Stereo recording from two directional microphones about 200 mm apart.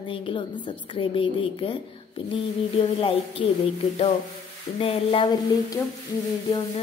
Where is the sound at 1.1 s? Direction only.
25° left (ahead or behind).